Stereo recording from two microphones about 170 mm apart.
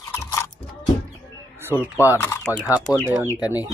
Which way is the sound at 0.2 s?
15° left (ahead or behind).